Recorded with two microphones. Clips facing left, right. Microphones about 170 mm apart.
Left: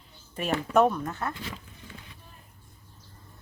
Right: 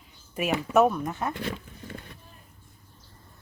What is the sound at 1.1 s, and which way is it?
Speech, 15° right (ahead or behind).